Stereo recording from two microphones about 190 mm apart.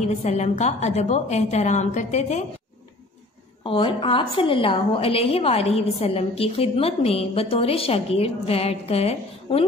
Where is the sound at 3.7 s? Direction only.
30° left (ahead or behind).